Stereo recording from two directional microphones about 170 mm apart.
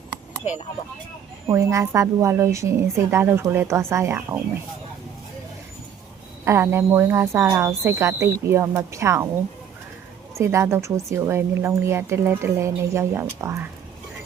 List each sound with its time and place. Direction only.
1.5 s speech: 15° right (ahead or behind)
6.4 s speech: 15° right (ahead or behind)
10.3 s speech: 15° right (ahead or behind)